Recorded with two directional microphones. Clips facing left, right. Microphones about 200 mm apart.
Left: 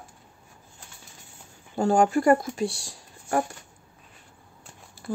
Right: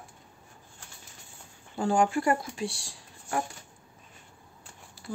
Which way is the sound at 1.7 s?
40° left (ahead or behind).